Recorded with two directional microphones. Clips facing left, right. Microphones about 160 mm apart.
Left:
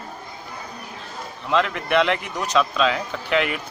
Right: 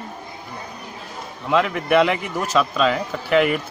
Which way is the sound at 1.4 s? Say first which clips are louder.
Right 2 dB; 5° right (ahead or behind).